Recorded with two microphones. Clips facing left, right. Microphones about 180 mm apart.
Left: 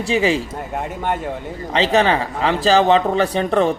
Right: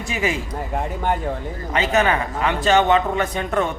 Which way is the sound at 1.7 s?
30° left (ahead or behind).